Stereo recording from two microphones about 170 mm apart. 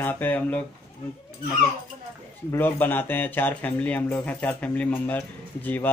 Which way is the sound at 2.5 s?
10° left (ahead or behind).